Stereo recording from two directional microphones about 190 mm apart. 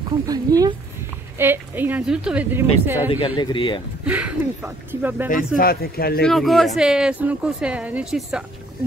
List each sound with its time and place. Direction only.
0.3 s a woman's voice: 20° right (ahead or behind)
3.3 s speech: 25° left (ahead or behind)
4.0 s a woman's voice: 5° right (ahead or behind)
5.6 s speech: 55° left (ahead or behind)
6.2 s speech: centre (ahead or behind)